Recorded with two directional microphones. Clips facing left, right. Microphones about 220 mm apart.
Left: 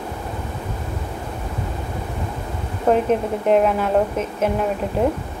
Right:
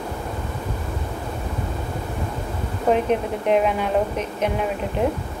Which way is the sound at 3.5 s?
5° left (ahead or behind).